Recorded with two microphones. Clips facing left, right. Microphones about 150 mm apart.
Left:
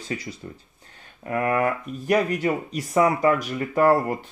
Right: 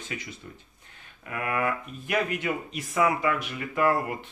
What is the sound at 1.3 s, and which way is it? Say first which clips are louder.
Speech: left 6 dB; 40° left (ahead or behind).